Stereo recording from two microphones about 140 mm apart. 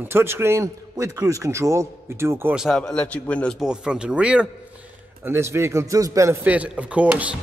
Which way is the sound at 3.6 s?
5° right (ahead or behind).